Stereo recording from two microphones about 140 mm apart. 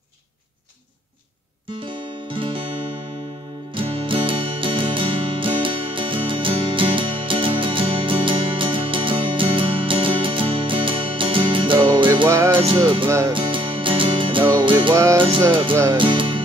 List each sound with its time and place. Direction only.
1.9 s music: 35° right (ahead or behind)
3.7 s music: 40° right (ahead or behind)
12.1 s music: 25° right (ahead or behind)
12.4 s music: 35° right (ahead or behind)
15.7 s music: 20° right (ahead or behind)
16.0 s music: 35° right (ahead or behind)